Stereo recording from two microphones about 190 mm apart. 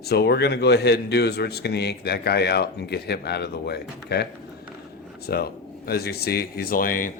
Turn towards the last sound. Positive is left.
turn(degrees=45)  # may be behind; listen again after turning